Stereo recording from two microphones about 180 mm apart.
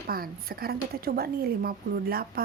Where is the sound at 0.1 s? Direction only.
55° right (ahead or behind).